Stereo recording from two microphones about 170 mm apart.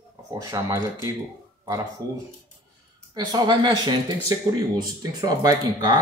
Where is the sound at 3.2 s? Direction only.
25° right (ahead or behind).